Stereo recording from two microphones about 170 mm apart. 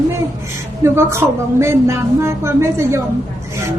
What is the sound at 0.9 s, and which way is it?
A woman's voice, 15° right (ahead or behind).